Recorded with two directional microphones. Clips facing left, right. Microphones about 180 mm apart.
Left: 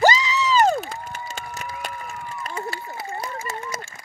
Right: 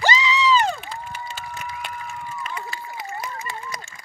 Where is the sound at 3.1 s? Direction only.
40° left (ahead or behind).